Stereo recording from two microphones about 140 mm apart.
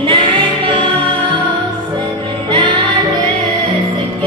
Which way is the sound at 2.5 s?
35° right (ahead or behind).